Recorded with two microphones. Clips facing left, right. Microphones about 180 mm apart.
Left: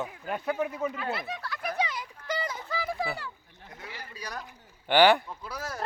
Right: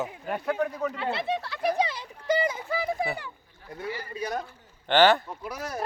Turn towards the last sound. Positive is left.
turn(degrees=-20)  # may be behind; listen again after turning